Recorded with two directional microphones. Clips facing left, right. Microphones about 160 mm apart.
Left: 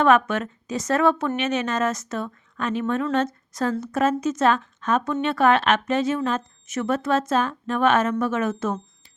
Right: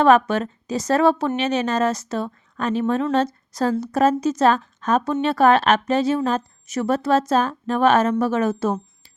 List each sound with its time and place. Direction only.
0.0 s speech: 35° right (ahead or behind)